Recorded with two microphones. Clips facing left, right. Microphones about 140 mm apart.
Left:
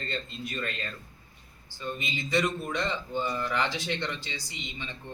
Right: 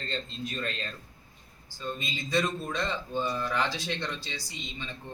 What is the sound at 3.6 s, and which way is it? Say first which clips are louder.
A man's voice: left 1 dB; 15° left (ahead or behind).